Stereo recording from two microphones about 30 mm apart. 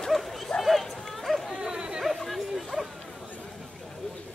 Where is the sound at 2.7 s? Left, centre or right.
Centre.